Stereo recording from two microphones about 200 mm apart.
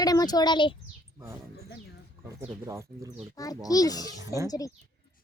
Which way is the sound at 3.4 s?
20° left (ahead or behind).